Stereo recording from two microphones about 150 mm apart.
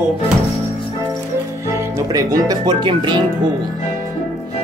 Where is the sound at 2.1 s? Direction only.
25° right (ahead or behind).